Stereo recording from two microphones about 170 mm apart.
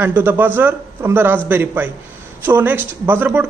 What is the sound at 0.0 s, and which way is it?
A man's voice, 10° right (ahead or behind).